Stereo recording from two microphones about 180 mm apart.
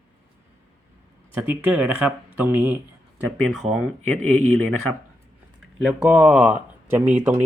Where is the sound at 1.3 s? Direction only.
10° right (ahead or behind).